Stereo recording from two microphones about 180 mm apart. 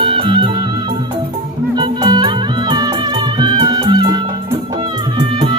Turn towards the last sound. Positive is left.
turn(degrees=-25)  # may be behind; listen again after turning